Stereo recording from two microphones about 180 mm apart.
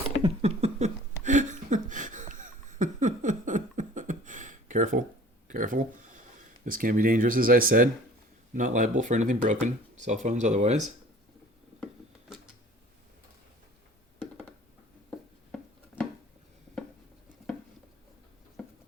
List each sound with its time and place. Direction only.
0.2 s a sound: 35° right (ahead or behind)
5.5 s speech: 50° right (ahead or behind)
18.6 s patter: 5° left (ahead or behind)